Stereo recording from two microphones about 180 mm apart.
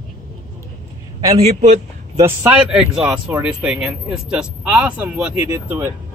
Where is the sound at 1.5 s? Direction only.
35° right (ahead or behind).